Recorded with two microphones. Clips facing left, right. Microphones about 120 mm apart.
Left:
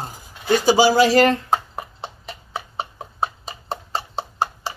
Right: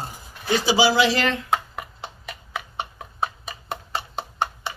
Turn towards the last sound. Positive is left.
turn(degrees=35)  # may be behind; listen again after turning